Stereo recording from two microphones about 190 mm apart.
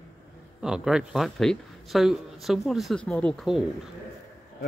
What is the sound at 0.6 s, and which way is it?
Speech, 5° right (ahead or behind).